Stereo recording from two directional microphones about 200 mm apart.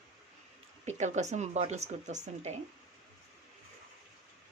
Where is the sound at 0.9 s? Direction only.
35° right (ahead or behind).